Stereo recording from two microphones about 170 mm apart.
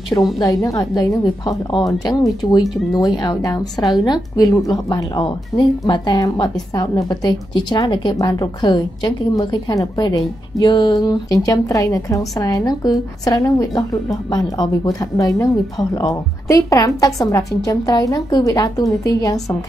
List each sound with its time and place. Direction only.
0.4 s a woman's voice: 20° left (ahead or behind)